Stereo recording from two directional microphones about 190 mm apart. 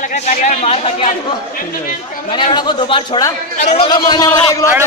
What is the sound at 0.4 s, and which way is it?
Speech, 35° left (ahead or behind).